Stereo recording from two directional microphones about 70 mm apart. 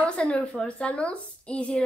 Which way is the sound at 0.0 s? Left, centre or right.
Centre.